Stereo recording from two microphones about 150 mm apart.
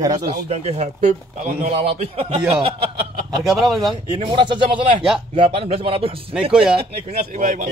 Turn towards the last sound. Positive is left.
turn(degrees=-55)  # may be behind; listen again after turning